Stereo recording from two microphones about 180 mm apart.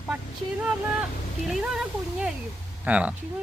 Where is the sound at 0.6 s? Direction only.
5° right (ahead or behind).